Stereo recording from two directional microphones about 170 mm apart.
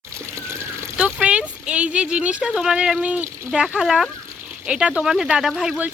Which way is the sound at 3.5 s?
5° right (ahead or behind).